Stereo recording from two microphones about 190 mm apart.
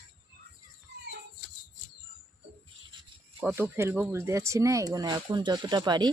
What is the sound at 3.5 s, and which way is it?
Speech, 10° right (ahead or behind).